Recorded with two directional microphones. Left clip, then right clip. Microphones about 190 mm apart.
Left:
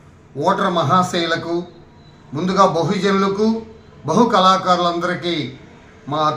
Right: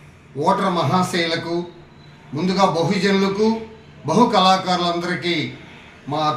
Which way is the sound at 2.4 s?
10° left (ahead or behind).